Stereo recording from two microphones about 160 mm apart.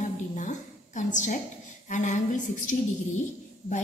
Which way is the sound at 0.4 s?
50° left (ahead or behind).